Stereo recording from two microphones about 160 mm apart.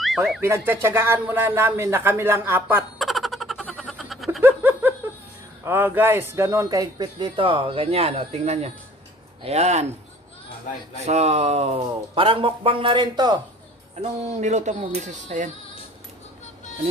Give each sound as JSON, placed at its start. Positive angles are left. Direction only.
{"t": 0.4, "sound": "speech", "side_deg": -15}
{"t": 3.0, "sound": "a sound", "side_deg": 0}
{"t": 4.4, "sound": "a sound", "side_deg": -10}
{"t": 5.6, "sound": "speech", "side_deg": -15}
{"t": 10.7, "sound": "speech", "side_deg": 55}
{"t": 11.1, "sound": "speech", "side_deg": -40}
{"t": 14.0, "sound": "speech", "side_deg": -45}